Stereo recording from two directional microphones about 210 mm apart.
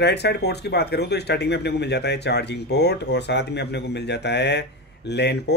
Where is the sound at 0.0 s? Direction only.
50° left (ahead or behind).